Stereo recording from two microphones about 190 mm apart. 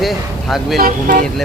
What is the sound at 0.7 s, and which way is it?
Speech, 50° right (ahead or behind).